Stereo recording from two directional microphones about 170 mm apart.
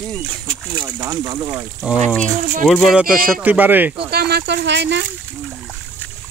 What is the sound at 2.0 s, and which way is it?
Speech, 5° left (ahead or behind).